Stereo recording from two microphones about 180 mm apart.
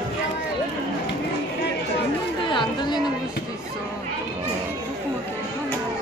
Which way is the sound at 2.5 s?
25° left (ahead or behind).